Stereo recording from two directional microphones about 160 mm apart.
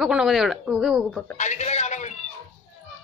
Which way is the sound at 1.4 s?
45° left (ahead or behind).